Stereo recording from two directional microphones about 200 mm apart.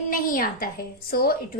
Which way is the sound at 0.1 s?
45° left (ahead or behind).